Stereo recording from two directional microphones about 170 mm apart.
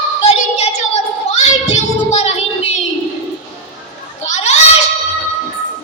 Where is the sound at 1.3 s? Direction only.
40° left (ahead or behind).